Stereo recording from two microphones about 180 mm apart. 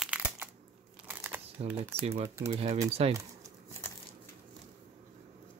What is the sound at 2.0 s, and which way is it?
Speech, 35° right (ahead or behind).